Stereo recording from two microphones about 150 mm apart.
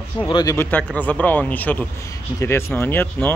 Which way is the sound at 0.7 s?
10° left (ahead or behind).